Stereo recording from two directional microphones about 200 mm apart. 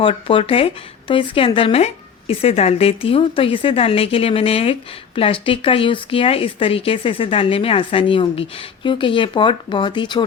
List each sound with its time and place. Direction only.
0.0 s speech: 25° left (ahead or behind)